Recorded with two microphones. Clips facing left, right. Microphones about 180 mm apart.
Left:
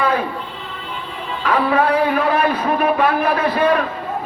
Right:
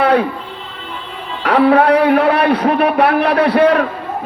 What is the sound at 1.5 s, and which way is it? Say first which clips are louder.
A man's voice: right 6 dB; 70° right (ahead or behind).